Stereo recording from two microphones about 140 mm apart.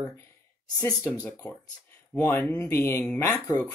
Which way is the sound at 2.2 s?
15° left (ahead or behind).